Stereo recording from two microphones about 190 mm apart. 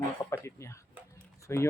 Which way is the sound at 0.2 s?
15° left (ahead or behind).